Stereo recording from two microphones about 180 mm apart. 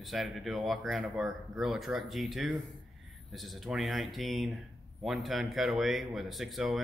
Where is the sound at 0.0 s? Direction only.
Centre (ahead or behind).